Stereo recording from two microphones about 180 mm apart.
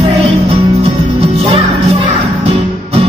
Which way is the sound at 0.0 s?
30° right (ahead or behind).